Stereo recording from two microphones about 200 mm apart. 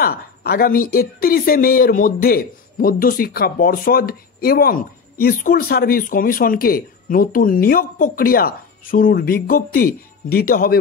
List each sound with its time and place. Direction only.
0.0 s speech: 50° left (ahead or behind)